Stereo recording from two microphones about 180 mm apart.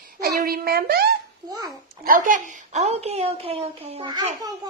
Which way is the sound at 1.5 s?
20° right (ahead or behind).